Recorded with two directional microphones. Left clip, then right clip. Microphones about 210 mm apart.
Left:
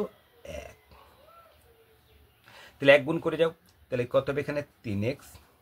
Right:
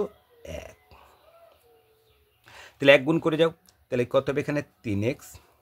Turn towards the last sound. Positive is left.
turn(degrees=-45)  # may be behind; listen again after turning